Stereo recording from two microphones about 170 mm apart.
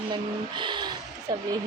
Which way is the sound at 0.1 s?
25° right (ahead or behind).